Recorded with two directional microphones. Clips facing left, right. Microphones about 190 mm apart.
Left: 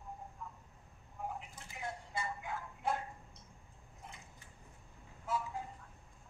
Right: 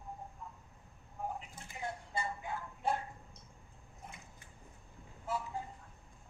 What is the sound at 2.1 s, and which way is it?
Vehicle, 30° right (ahead or behind).